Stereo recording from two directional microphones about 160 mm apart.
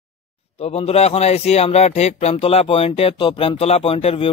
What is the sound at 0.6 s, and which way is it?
A man's voice, 40° left (ahead or behind).